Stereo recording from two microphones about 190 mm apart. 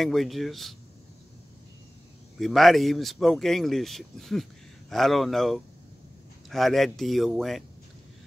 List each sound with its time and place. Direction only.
0.0 s speech: centre (ahead or behind)
2.4 s speech: centre (ahead or behind)